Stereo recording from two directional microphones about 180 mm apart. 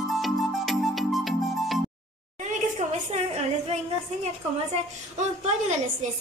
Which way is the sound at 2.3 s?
40° right (ahead or behind).